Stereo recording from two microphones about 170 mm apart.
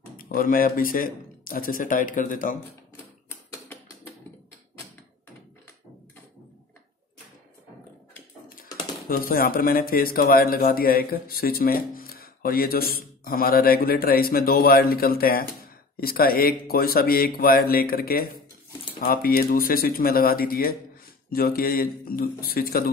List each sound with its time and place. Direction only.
0.2 s speech: 55° left (ahead or behind)
9.1 s speech: 60° left (ahead or behind)